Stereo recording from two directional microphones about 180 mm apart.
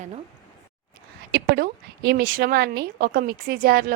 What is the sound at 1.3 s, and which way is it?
A woman's voice, 60° right (ahead or behind).